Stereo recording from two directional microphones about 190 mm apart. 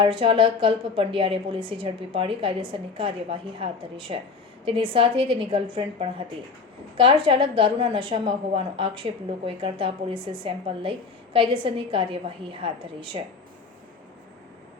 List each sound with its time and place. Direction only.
0.0 s a woman's voice: 25° right (ahead or behind)